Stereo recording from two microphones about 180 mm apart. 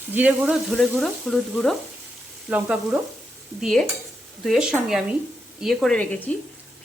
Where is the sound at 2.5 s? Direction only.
10° right (ahead or behind).